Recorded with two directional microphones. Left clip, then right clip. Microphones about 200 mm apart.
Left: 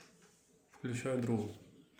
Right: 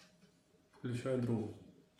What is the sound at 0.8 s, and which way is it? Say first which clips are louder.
Speech: left 1 dB; 20° left (ahead or behind).